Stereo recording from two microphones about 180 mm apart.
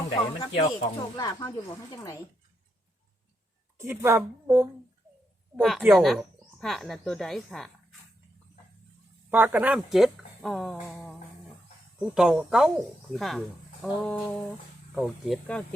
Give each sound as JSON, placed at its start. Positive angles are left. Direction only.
{"t": 0.3, "sound": "speech", "side_deg": 30}
{"t": 3.8, "sound": "a woman's voice", "side_deg": -15}
{"t": 5.5, "sound": "speech", "side_deg": 0}
{"t": 9.3, "sound": "speech", "side_deg": -10}